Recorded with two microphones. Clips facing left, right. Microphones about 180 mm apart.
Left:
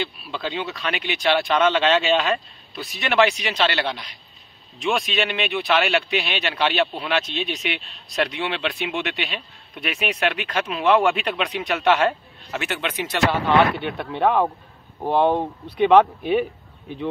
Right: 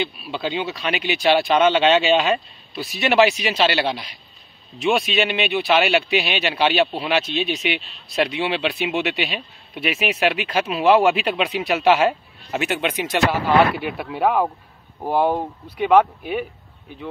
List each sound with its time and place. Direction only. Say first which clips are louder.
0.0 s speech: right 3 dB; 5° right (ahead or behind)
2.7 s speech: right 4 dB; 5° right (ahead or behind)
13.7 s speech: even; 5° right (ahead or behind)